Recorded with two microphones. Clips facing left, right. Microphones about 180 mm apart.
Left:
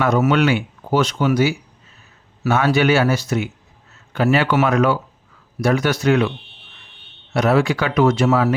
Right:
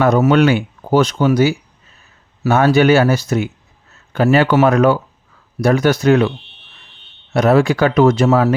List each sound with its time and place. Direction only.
0.0 s speech: 40° right (ahead or behind)
7.3 s speech: 45° right (ahead or behind)